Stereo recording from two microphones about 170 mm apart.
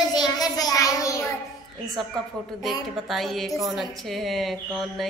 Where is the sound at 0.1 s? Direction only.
25° left (ahead or behind).